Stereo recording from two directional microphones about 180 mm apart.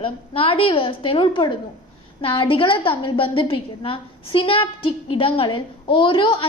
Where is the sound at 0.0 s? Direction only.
30° left (ahead or behind).